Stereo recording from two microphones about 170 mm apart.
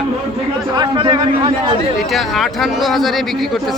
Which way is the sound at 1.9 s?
Centre (ahead or behind).